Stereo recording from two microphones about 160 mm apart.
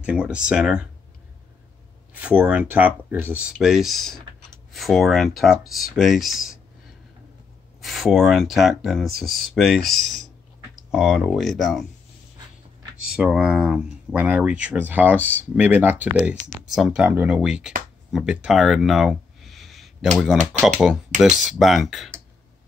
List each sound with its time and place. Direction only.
0.0 s speech: 5° right (ahead or behind)
2.1 s speech: 10° right (ahead or behind)
7.8 s speech: centre (ahead or behind)
13.1 s speech: 5° right (ahead or behind)
16.2 s speech: centre (ahead or behind)